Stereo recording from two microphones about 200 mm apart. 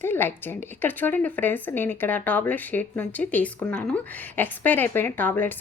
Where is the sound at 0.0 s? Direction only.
10° left (ahead or behind).